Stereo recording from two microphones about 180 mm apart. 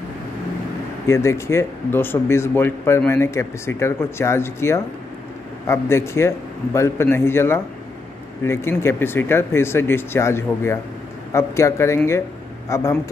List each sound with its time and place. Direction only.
1.0 s speech: 15° left (ahead or behind)